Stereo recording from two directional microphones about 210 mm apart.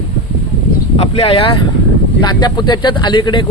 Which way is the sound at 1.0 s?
30° left (ahead or behind).